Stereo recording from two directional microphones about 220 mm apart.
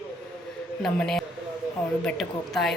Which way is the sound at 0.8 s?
Centre (ahead or behind).